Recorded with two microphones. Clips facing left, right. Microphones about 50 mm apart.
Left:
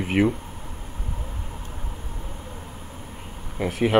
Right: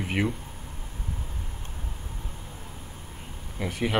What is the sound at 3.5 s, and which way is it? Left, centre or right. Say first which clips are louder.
Speech: left 6 dB; centre.